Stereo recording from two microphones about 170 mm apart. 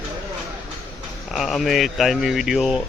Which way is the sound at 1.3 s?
Centre (ahead or behind).